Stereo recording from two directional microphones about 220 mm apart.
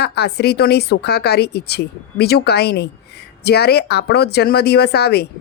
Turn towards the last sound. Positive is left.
turn(degrees=45)  # may be behind; listen again after turning